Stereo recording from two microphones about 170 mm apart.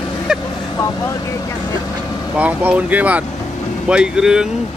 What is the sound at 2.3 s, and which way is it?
Speech, 10° right (ahead or behind).